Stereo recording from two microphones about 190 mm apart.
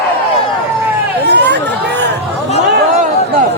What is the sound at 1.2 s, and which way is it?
Run, 65° right (ahead or behind).